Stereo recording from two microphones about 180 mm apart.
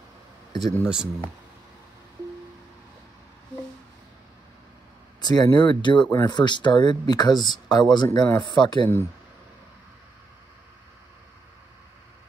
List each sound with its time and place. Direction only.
0.8 s speech: 5° right (ahead or behind)
5.2 s speech: 20° left (ahead or behind)